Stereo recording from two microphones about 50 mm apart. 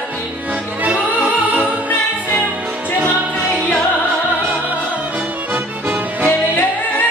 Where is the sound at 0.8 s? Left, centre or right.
Right.